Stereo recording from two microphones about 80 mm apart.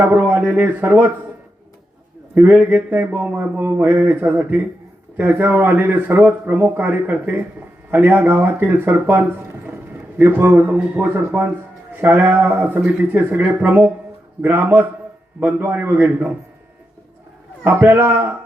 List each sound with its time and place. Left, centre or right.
0.0 s a sound: right
0.4 s speech: centre
2.3 s speech: right
17.7 s speech: right